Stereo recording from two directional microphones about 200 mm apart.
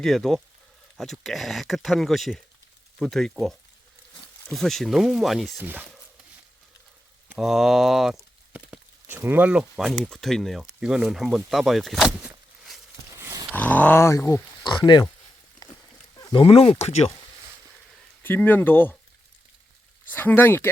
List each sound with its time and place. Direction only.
0.0 s speech: centre (ahead or behind)
4.5 s speech: centre (ahead or behind)
7.3 s speech: centre (ahead or behind)
13.1 s a sound: 15° right (ahead or behind)
13.5 s speech: 10° left (ahead or behind)
16.1 s speech: 20° left (ahead or behind)
18.2 s speech: 10° left (ahead or behind)
20.1 s speech: 10° left (ahead or behind)